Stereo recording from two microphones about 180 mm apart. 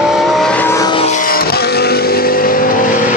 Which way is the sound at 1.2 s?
55° left (ahead or behind).